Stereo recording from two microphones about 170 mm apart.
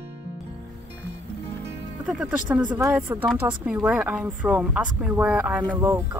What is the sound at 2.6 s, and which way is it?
Speech, 25° right (ahead or behind).